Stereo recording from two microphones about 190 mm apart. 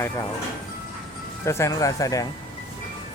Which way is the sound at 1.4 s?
15° left (ahead or behind).